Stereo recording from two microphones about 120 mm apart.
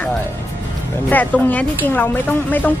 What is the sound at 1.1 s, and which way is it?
Speech, 15° left (ahead or behind).